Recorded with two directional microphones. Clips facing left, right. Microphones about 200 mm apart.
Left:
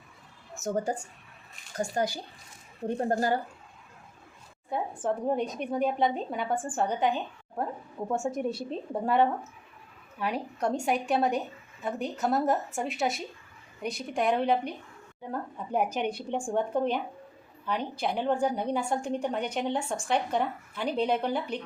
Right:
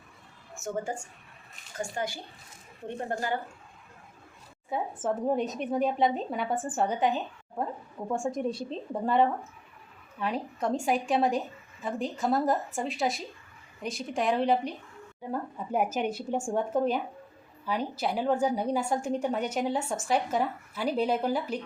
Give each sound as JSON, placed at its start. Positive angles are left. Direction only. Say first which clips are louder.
{"t": 0.6, "sound": "a woman's voice", "louder": "left 3 dB", "side_deg": 35}
{"t": 4.7, "sound": "a woman's voice", "louder": "even", "side_deg": -5}